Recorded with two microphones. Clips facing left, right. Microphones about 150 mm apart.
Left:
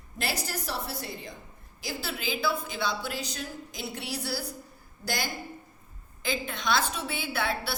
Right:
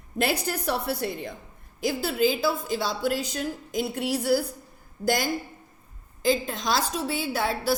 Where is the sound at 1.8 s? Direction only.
45° right (ahead or behind).